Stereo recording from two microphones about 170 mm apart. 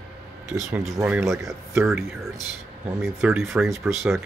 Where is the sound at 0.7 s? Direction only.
Centre (ahead or behind).